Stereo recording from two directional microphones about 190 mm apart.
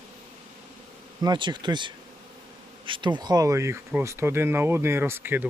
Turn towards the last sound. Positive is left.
turn(degrees=-10)  # may be behind; listen again after turning